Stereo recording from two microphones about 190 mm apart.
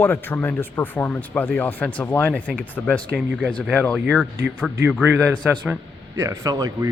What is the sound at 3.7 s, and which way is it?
Speech, 10° left (ahead or behind).